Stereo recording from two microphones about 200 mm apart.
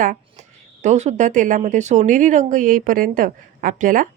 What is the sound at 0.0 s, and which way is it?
Speech, 40° right (ahead or behind).